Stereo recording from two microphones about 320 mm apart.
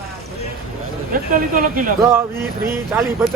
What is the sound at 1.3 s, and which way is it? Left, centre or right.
Speech, right.